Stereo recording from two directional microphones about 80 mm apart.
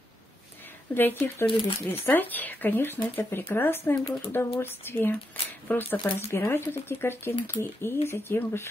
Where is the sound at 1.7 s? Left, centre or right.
Left.